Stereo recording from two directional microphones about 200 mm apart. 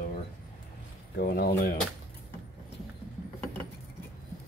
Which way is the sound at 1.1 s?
50° left (ahead or behind).